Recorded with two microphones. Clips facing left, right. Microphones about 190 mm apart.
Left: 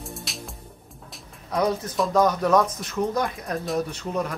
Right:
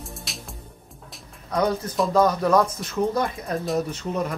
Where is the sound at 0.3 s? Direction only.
Centre (ahead or behind).